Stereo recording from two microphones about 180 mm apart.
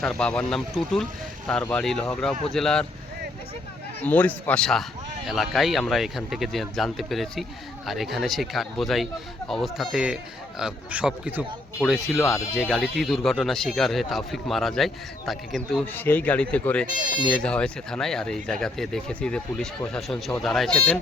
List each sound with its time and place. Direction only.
0.0 s speech: 5° left (ahead or behind)
4.0 s a man's voice: 10° left (ahead or behind)
15.9 s speech: 10° left (ahead or behind)